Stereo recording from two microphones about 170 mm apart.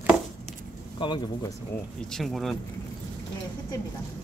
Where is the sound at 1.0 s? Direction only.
30° left (ahead or behind).